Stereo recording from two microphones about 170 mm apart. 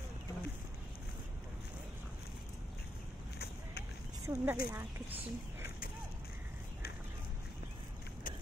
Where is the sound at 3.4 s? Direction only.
70° left (ahead or behind).